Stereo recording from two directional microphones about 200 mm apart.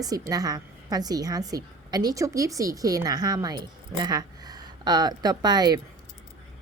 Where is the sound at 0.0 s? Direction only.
20° right (ahead or behind).